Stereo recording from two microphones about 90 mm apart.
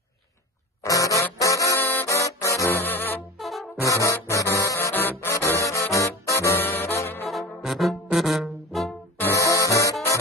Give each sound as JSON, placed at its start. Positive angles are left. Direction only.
{"t": 0.8, "sound": "music", "side_deg": 40}
{"t": 2.8, "sound": "music", "side_deg": 20}
{"t": 3.3, "sound": "brass instrument", "side_deg": 0}
{"t": 3.8, "sound": "music", "side_deg": 35}
{"t": 4.9, "sound": "music", "side_deg": 25}
{"t": 5.3, "sound": "music", "side_deg": 35}
{"t": 7.2, "sound": "brass instrument", "side_deg": 0}
{"t": 9.3, "sound": "music", "side_deg": 35}